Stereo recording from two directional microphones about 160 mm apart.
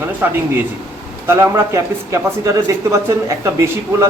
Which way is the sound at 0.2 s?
15° right (ahead or behind).